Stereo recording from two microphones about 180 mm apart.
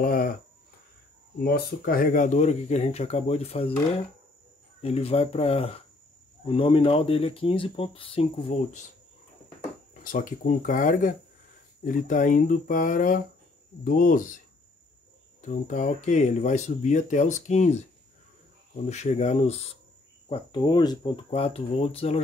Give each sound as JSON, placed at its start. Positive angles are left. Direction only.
{"t": 0.0, "sound": "a sound", "side_deg": 55}
{"t": 1.4, "sound": "speech", "side_deg": 55}
{"t": 4.8, "sound": "speech", "side_deg": 35}
{"t": 10.0, "sound": "speech", "side_deg": 50}
{"t": 15.4, "sound": "speech", "side_deg": 45}
{"t": 18.9, "sound": "speech", "side_deg": 40}
{"t": 20.2, "sound": "speech", "side_deg": 25}